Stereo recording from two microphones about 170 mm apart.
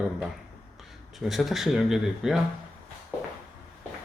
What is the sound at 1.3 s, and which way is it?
Speech, centre (ahead or behind).